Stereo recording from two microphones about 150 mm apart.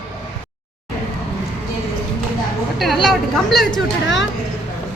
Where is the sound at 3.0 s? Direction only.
Centre (ahead or behind).